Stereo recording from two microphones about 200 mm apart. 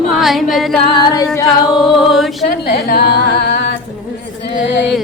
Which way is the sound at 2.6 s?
50° left (ahead or behind).